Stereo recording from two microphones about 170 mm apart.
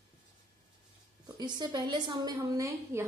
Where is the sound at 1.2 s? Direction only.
25° right (ahead or behind).